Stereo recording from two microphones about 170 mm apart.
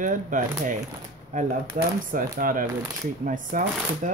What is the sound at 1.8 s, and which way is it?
Speech, 45° right (ahead or behind).